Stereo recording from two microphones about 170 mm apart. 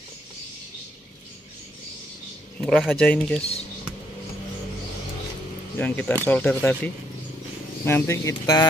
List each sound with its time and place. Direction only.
2.6 s speech: centre (ahead or behind)
5.8 s speech: 10° left (ahead or behind)